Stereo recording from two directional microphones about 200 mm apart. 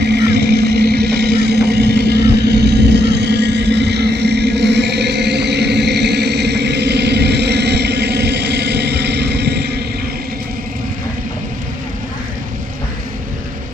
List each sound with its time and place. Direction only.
0.0 s vehicle: 55° right (ahead or behind)